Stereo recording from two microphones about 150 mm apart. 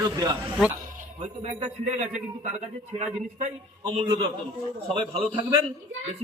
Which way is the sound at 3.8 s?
30° right (ahead or behind).